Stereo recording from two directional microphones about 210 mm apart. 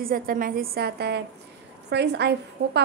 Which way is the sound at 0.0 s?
40° right (ahead or behind).